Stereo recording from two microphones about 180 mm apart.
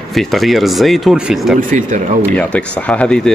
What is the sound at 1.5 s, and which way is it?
Speech, 45° right (ahead or behind).